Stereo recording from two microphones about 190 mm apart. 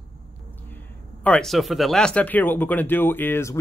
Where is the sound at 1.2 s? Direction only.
5° left (ahead or behind).